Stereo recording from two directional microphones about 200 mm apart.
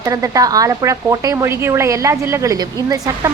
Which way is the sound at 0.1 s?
15° right (ahead or behind).